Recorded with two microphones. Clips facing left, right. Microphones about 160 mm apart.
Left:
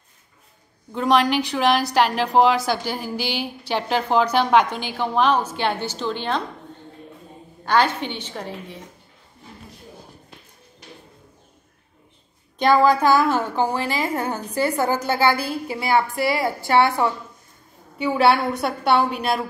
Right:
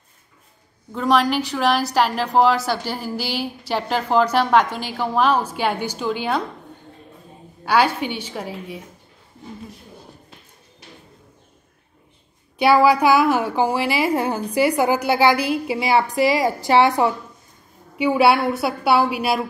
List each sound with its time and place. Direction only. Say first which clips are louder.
0.9 s a woman's voice: even; centre (ahead or behind)
7.6 s a woman's voice: right 1 dB; 10° right (ahead or behind)
12.5 s a woman's voice: right 2 dB; 10° right (ahead or behind)